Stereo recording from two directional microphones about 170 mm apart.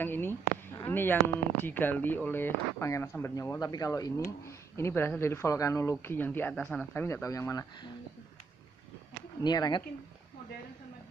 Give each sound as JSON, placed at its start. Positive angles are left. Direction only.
{"t": 0.0, "sound": "speech", "side_deg": 10}
{"t": 9.4, "sound": "speech", "side_deg": 25}